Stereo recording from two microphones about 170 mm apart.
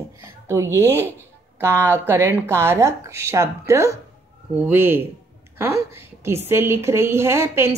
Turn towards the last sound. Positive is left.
turn(degrees=-15)  # may be behind; listen again after turning